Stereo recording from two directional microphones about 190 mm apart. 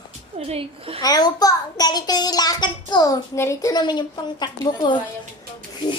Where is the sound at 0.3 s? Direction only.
30° right (ahead or behind).